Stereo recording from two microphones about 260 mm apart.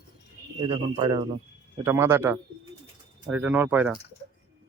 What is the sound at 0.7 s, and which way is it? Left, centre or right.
Speech, centre.